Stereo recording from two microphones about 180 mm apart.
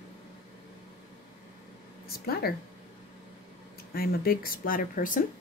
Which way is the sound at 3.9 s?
55° left (ahead or behind).